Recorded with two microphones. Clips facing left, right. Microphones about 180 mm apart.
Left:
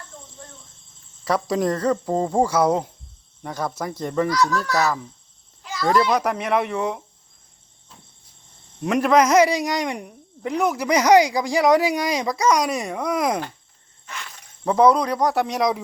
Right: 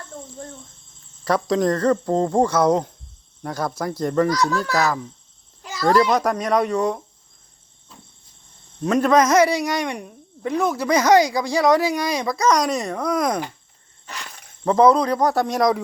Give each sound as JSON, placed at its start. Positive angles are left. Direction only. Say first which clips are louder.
{"t": 1.2, "sound": "speech", "louder": "right 2 dB", "side_deg": 5}
{"t": 4.3, "sound": "a child's voice", "louder": "even", "side_deg": -40}
{"t": 6.1, "sound": "speech", "louder": "right 1 dB", "side_deg": 5}
{"t": 8.8, "sound": "speech", "louder": "right 1 dB", "side_deg": 10}
{"t": 14.1, "sound": "a sound", "louder": "right 1 dB", "side_deg": -40}
{"t": 14.6, "sound": "speech", "louder": "right 1 dB", "side_deg": 10}